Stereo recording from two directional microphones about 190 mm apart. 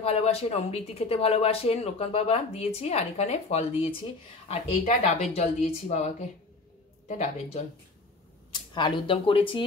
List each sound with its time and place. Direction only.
0.0 s speech: 30° left (ahead or behind)
8.7 s speech: 25° left (ahead or behind)